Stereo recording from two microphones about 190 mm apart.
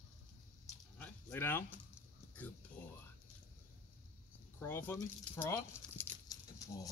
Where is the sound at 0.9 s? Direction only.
10° left (ahead or behind).